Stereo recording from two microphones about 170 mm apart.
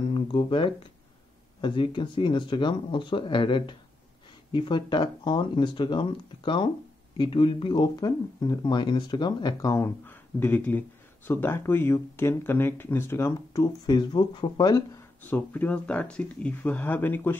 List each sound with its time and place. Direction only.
0.1 s speech: 30° left (ahead or behind)
15.2 s speech: 10° left (ahead or behind)